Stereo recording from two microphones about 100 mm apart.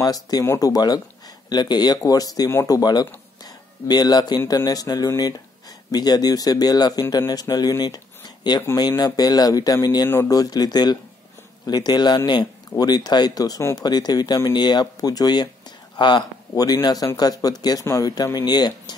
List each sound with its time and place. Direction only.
0.0 s speech: 40° left (ahead or behind)
3.4 s a sound: 40° left (ahead or behind)
4.5 s speech: 40° left (ahead or behind)